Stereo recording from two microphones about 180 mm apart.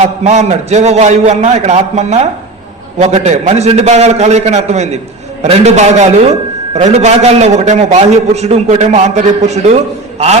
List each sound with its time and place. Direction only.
0.0 s a man's voice: 40° right (ahead or behind)